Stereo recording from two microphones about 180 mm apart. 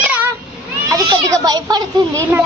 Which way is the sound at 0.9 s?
20° right (ahead or behind).